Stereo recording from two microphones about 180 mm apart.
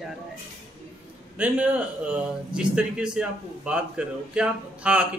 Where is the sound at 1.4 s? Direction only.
10° right (ahead or behind).